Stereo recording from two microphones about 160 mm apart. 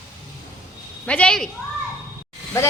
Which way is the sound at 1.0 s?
5° left (ahead or behind).